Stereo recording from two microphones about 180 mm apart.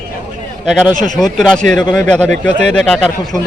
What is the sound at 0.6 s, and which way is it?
A man's voice, centre (ahead or behind).